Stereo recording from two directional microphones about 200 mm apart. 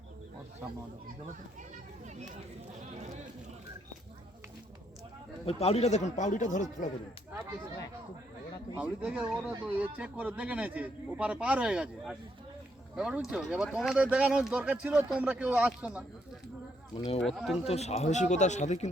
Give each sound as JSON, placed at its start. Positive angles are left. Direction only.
{"t": 2.0, "sound": "speech", "side_deg": -35}
{"t": 5.5, "sound": "speech", "side_deg": 30}
{"t": 8.7, "sound": "a man's voice", "side_deg": -10}
{"t": 17.2, "sound": "speech", "side_deg": 0}
{"t": 17.7, "sound": "speech", "side_deg": 30}